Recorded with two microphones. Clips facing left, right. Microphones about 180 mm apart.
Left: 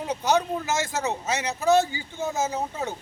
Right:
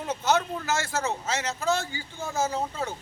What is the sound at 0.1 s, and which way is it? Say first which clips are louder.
Speech: left 2 dB; 15° left (ahead or behind).